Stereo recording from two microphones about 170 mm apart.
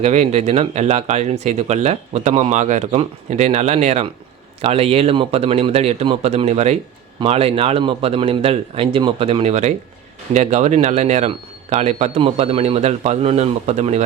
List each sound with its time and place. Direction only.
0.0 s speech: 40° right (ahead or behind)